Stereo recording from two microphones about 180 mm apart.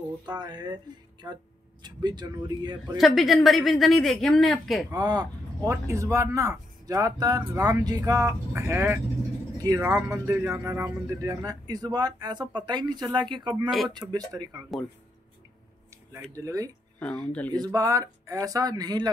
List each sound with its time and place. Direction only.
0.3 s speech: 25° right (ahead or behind)
3.0 s speech: centre (ahead or behind)
4.9 s speech: 20° right (ahead or behind)
13.7 s speech: centre (ahead or behind)
13.9 s speech: 20° right (ahead or behind)
16.3 s speech: 20° right (ahead or behind)